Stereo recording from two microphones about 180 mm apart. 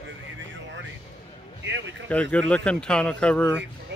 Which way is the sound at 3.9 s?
75° right (ahead or behind).